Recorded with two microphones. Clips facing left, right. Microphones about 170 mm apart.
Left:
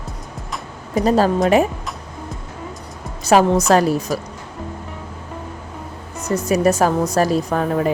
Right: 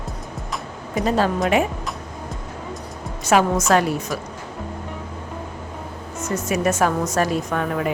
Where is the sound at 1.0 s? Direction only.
40° left (ahead or behind).